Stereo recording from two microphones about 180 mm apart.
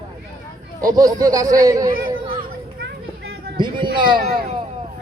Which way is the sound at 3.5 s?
25° right (ahead or behind).